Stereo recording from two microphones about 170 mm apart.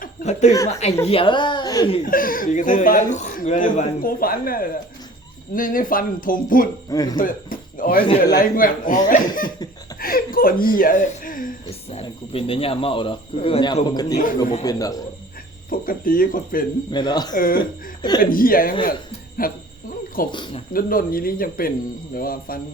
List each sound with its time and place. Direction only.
0.0 s chuckle: 50° left (ahead or behind)
0.7 s a woman's voice: 40° left (ahead or behind); by 1.9 s 25° left (ahead or behind)
2.0 s speech: 55° left (ahead or behind)
6.9 s speech: 20° left (ahead or behind)
7.2 s speech: 55° left (ahead or behind)
10.0 s a sound: 60° left (ahead or behind)
10.8 s speech: 50° left (ahead or behind)
11.7 s speech: 35° left (ahead or behind)
15.7 s speech: 55° left (ahead or behind)
16.9 s speech: 25° left (ahead or behind)
17.3 s speech: 55° left (ahead or behind)
20.3 s speech: 30° left (ahead or behind)
20.7 s speech: 55° left (ahead or behind)